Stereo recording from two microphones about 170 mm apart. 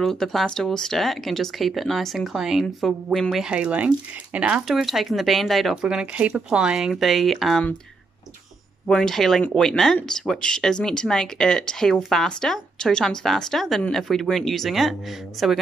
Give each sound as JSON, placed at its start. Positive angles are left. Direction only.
{"t": 0.0, "sound": "speech", "side_deg": 0}
{"t": 8.8, "sound": "speech", "side_deg": 5}